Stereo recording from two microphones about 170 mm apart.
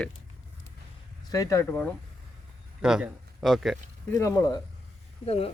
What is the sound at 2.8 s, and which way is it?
Speech, 5° right (ahead or behind).